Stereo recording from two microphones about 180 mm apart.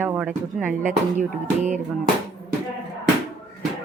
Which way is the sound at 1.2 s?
45° right (ahead or behind).